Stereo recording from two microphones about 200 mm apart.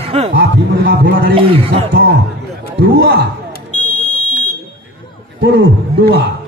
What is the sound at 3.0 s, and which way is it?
Speech, 55° right (ahead or behind).